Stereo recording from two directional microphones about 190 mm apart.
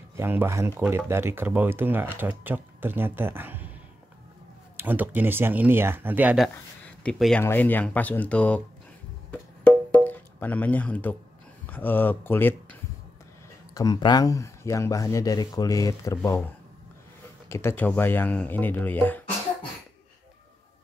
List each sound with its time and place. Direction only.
0.1 s speech: 10° right (ahead or behind)
4.7 s speech: 10° right (ahead or behind); by 8.6 s 5° left (ahead or behind)
9.3 s music: 5° left (ahead or behind)
11.6 s speech: 10° left (ahead or behind)
13.7 s speech: 20° left (ahead or behind)
17.5 s speech: 15° left (ahead or behind)